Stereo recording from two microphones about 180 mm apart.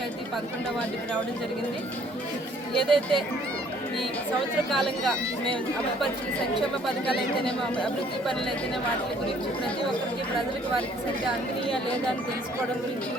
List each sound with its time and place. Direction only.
2.7 s speech: centre (ahead or behind)
4.7 s speech: centre (ahead or behind)